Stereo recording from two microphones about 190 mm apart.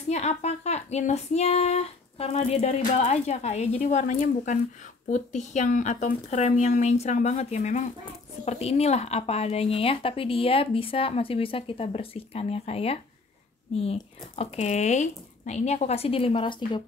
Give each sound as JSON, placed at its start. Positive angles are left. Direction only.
{"t": 0.1, "sound": "speech", "side_deg": 35}